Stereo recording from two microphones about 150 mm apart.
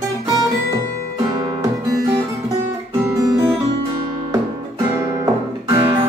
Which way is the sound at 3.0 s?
20° right (ahead or behind).